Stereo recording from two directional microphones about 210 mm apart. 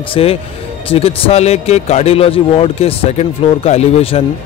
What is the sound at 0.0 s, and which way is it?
A man's voice, 25° left (ahead or behind).